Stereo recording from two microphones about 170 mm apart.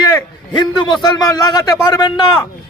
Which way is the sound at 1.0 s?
25° left (ahead or behind).